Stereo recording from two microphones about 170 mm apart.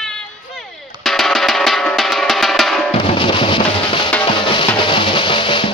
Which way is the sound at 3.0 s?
30° left (ahead or behind).